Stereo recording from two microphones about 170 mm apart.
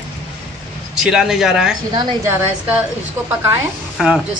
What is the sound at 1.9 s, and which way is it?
Speech, 25° right (ahead or behind).